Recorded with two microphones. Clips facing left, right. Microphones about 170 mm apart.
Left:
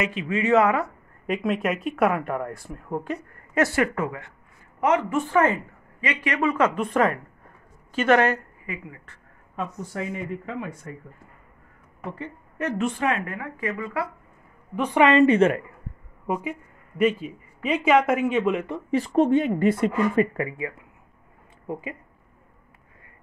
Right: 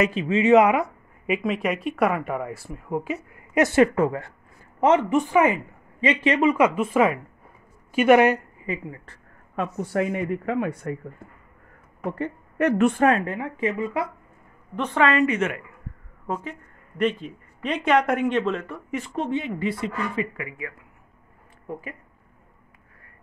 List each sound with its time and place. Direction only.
0.0 s a woman's voice: 30° right (ahead or behind)
5.2 s speech: 15° right (ahead or behind)
5.9 s speech: 25° right (ahead or behind)
6.5 s speech: 10° right (ahead or behind)
8.6 s a woman's voice: 30° right (ahead or behind)
9.6 s speech: 65° right (ahead or behind)
12.0 s a woman's voice: 55° right (ahead or behind)
13.1 s speech: 25° right (ahead or behind)
14.8 s a woman's voice: 15° left (ahead or behind)
15.2 s a woman's voice: 30° left (ahead or behind)
16.3 s a woman's voice: 10° left (ahead or behind)
18.9 s speech: 35° left (ahead or behind)
20.4 s speech: 30° left (ahead or behind)